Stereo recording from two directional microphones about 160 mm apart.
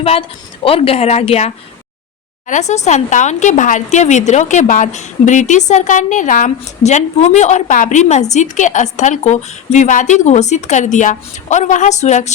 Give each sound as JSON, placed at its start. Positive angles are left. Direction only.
{"t": 0.0, "sound": "speech", "side_deg": 35}